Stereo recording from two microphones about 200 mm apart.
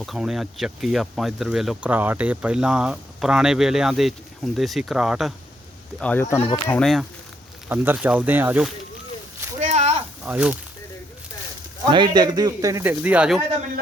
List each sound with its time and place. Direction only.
0.0 s speech: centre (ahead or behind)
6.0 s speech: 10° left (ahead or behind)
7.7 s speech: 10° right (ahead or behind)
9.6 s a sound: 35° right (ahead or behind)
10.2 s speech: 5° right (ahead or behind)
11.9 s speech: 20° right (ahead or behind); by 13.4 s 5° right (ahead or behind)